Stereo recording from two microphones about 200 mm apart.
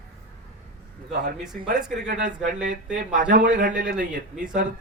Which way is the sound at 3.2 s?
60° right (ahead or behind).